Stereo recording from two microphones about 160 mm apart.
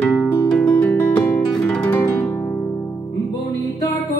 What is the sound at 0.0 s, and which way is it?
Music, 10° left (ahead or behind).